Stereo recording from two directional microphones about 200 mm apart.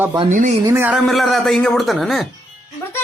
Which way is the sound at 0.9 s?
Centre (ahead or behind).